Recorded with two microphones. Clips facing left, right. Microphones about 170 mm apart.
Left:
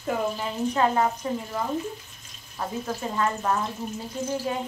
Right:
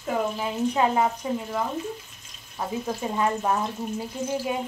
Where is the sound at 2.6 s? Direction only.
15° right (ahead or behind).